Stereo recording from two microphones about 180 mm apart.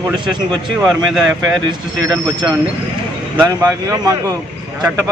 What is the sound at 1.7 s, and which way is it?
Speech, 20° right (ahead or behind).